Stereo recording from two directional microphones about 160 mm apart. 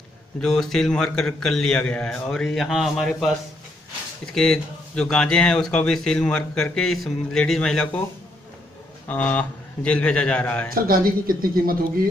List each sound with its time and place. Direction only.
0.4 s speech: 5° left (ahead or behind)
9.0 s a man's voice: 10° left (ahead or behind)
10.7 s speech: 65° right (ahead or behind)